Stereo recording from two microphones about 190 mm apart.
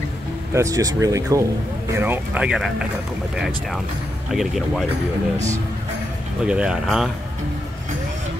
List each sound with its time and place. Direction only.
0.6 s speech: 15° right (ahead or behind); by 4.8 s centre (ahead or behind)
6.4 s speech: 5° right (ahead or behind)